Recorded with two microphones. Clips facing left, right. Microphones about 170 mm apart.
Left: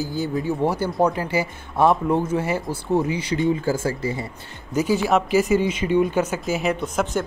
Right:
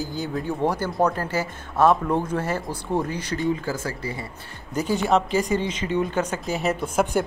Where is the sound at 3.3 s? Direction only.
25° left (ahead or behind).